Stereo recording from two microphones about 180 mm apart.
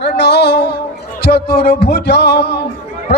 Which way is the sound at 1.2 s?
60° left (ahead or behind).